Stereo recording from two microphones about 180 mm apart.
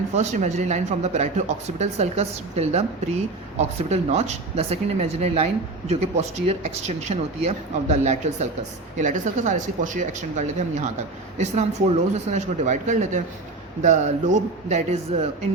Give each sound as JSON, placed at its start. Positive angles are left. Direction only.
{"t": 0.1, "sound": "speech", "side_deg": -40}